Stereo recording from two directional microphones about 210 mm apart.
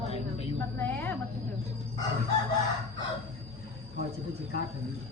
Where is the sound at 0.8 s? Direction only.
10° left (ahead or behind).